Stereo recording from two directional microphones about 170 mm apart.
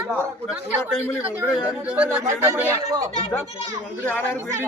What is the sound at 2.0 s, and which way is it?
Speech, 10° right (ahead or behind).